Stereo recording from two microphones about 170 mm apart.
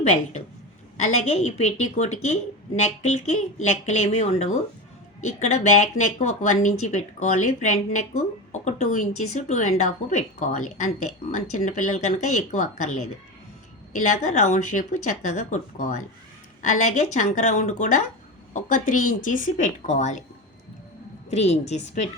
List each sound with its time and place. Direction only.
0.9 s a woman's voice: 40° left (ahead or behind)
21.2 s a woman's voice: 40° left (ahead or behind)